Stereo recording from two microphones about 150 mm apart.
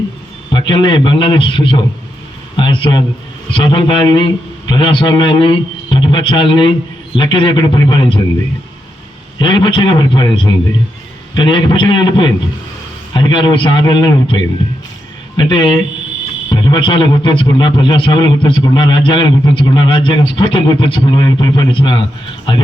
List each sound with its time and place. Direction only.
0.5 s a man's voice: 30° left (ahead or behind)
9.4 s a man's voice: 35° left (ahead or behind)